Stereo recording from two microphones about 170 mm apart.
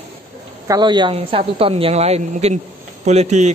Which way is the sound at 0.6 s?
25° right (ahead or behind).